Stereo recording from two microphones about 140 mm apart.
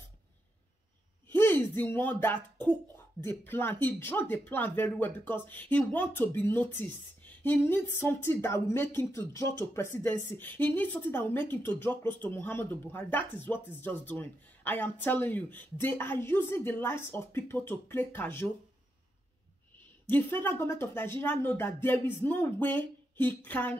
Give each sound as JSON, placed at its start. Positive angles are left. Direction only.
{"t": 1.8, "sound": "speech", "side_deg": 15}
{"t": 20.1, "sound": "speech", "side_deg": 15}